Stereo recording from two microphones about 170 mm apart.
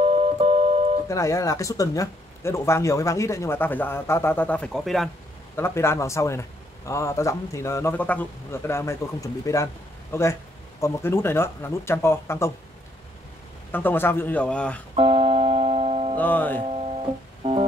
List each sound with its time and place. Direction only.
0.0 s music: 35° right (ahead or behind)
1.0 s speech: 20° left (ahead or behind); by 5.1 s centre (ahead or behind)
5.6 s speech: 15° left (ahead or behind)
13.7 s speech: 10° left (ahead or behind)
15.0 s music: 30° right (ahead or behind)
16.2 s speech: 10° left (ahead or behind)
17.4 s music: 35° right (ahead or behind)